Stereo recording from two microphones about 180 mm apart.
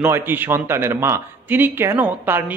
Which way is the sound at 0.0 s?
10° right (ahead or behind).